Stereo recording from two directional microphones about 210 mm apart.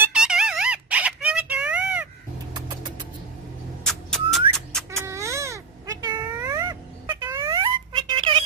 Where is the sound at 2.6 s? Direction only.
20° right (ahead or behind).